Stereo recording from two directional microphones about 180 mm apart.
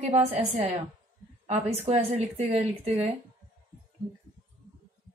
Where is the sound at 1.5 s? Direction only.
35° right (ahead or behind).